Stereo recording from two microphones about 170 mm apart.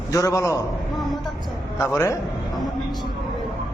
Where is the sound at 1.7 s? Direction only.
20° left (ahead or behind).